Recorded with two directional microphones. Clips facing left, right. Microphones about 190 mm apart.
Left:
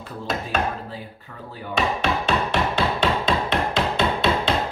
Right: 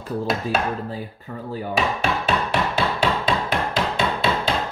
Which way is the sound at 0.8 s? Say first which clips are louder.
Right 5 dB; 45° right (ahead or behind).